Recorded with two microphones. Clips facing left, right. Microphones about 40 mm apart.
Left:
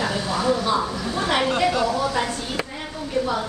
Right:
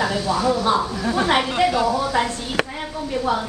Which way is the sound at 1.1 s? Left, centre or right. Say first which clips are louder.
Right 7 dB; right.